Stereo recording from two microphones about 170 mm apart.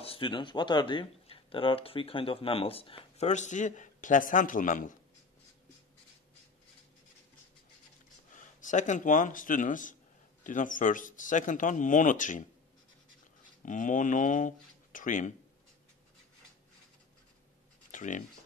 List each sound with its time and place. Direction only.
0.0 s speech: 30° left (ahead or behind); by 4.9 s 50° left (ahead or behind)
8.4 s speech: 50° left (ahead or behind)
13.6 s speech: 50° left (ahead or behind)
17.9 s speech: 50° left (ahead or behind)